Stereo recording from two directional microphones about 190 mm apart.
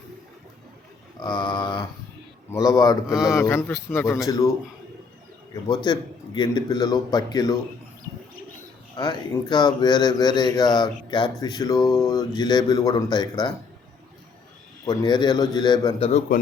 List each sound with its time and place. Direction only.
1.2 s a man's voice: 25° left (ahead or behind)
5.6 s speech: 20° left (ahead or behind)
9.0 s speech: 25° left (ahead or behind)
14.8 s speech: 25° left (ahead or behind)
16.0 s speech: 35° left (ahead or behind)